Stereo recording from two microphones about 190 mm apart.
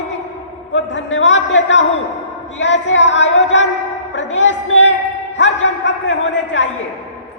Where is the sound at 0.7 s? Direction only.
75° left (ahead or behind).